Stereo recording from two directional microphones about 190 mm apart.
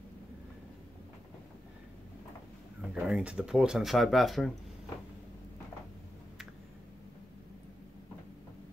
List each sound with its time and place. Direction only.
2.9 s speech: 5° right (ahead or behind)